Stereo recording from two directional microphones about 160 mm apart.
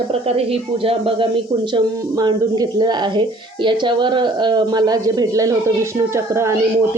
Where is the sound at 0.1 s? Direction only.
40° right (ahead or behind).